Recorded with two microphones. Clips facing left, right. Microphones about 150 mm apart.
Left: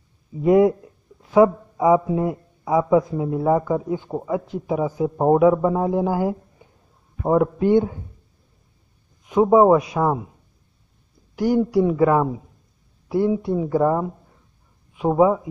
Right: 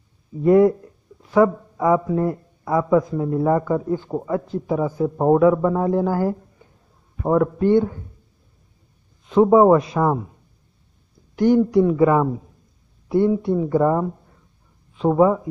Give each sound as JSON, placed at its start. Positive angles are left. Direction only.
{"t": 0.4, "sound": "a man's voice", "side_deg": 20}
{"t": 7.3, "sound": "a man's voice", "side_deg": 20}
{"t": 9.2, "sound": "speech", "side_deg": 5}
{"t": 11.3, "sound": "speech", "side_deg": 5}